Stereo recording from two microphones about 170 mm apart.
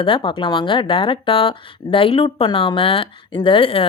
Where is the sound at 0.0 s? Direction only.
30° left (ahead or behind).